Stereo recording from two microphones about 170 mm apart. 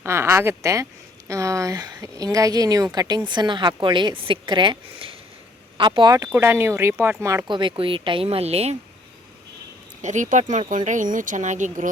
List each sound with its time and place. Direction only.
0.0 s speech: 15° right (ahead or behind)
7.4 s speech: 30° right (ahead or behind)
10.0 s speech: 45° right (ahead or behind)